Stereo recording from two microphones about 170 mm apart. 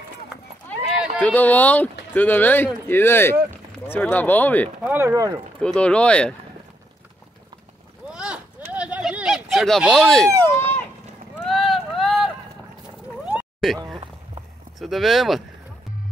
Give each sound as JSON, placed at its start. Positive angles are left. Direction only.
{"t": 0.8, "sound": "run", "side_deg": -5}
{"t": 1.2, "sound": "speech", "side_deg": 10}
{"t": 4.8, "sound": "speech", "side_deg": -15}
{"t": 5.6, "sound": "speech", "side_deg": 5}
{"t": 8.1, "sound": "a sound", "side_deg": -5}
{"t": 10.6, "sound": "run", "side_deg": 10}
{"t": 11.3, "sound": "run", "side_deg": 0}
{"t": 13.2, "sound": "a sound", "side_deg": 0}
{"t": 14.8, "sound": "speech", "side_deg": 0}